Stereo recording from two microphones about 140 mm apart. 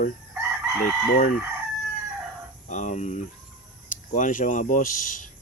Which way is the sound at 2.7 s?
60° left (ahead or behind).